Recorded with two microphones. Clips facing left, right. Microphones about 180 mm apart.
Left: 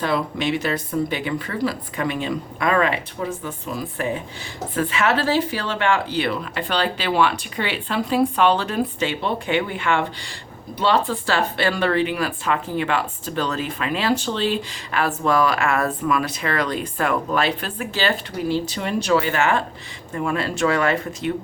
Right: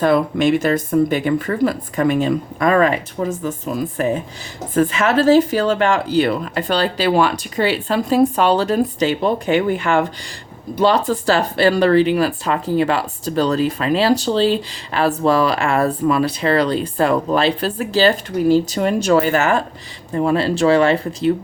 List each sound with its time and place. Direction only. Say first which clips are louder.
0.0 s speech: right 8 dB; 50° right (ahead or behind); by 21.3 s 35° right (ahead or behind)